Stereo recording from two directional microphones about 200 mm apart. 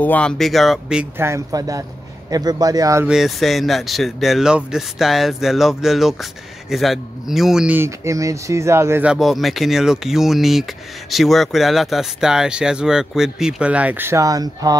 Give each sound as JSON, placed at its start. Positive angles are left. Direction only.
{"t": 0.0, "sound": "a man's voice", "side_deg": 5}
{"t": 3.1, "sound": "speech", "side_deg": 0}